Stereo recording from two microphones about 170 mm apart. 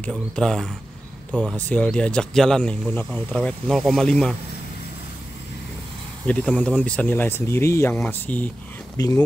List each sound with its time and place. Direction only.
0.0 s speech: 5° left (ahead or behind)
6.2 s speech: 10° left (ahead or behind)
8.9 s speech: 20° left (ahead or behind)